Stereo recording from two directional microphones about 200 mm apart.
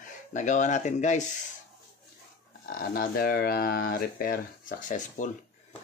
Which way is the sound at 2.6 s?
45° left (ahead or behind).